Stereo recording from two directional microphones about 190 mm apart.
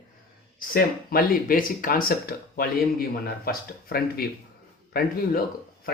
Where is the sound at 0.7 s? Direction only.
50° left (ahead or behind).